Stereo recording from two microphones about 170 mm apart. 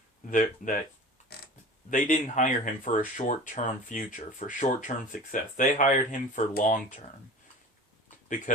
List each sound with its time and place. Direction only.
0.3 s speech: 50° left (ahead or behind)
1.9 s speech: 50° left (ahead or behind)
8.5 s speech: 50° left (ahead or behind)